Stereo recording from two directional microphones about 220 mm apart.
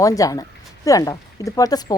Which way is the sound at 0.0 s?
15° left (ahead or behind).